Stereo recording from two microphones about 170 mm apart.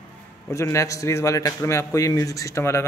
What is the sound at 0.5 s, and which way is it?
A man's voice, 15° left (ahead or behind).